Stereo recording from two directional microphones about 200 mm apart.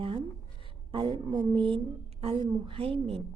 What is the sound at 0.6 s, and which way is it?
A woman's voice, 25° right (ahead or behind).